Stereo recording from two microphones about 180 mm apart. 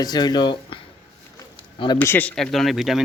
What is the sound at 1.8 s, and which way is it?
Speech, 20° left (ahead or behind).